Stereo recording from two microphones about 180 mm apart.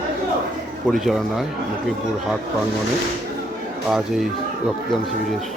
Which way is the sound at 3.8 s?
Centre (ahead or behind).